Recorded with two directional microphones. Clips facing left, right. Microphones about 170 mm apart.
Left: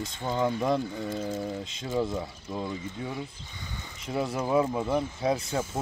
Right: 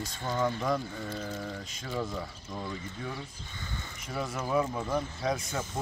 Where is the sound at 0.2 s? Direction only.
15° left (ahead or behind).